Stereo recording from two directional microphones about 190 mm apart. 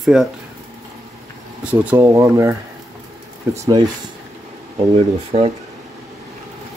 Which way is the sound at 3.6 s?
20° right (ahead or behind).